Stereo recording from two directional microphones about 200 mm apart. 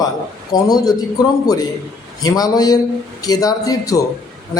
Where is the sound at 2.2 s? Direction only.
20° left (ahead or behind).